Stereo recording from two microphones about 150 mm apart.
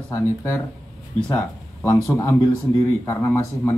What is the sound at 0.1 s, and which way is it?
A man's voice, 15° left (ahead or behind).